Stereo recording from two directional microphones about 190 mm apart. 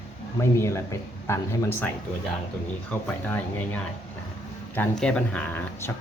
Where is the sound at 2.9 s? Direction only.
10° left (ahead or behind).